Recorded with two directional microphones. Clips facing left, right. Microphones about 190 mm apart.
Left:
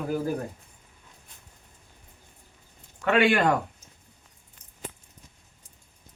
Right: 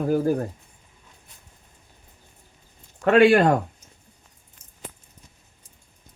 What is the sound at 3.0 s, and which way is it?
Speech, 40° right (ahead or behind).